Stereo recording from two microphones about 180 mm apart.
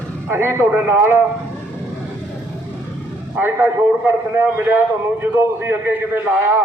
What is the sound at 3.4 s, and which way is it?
A man's voice, 10° right (ahead or behind).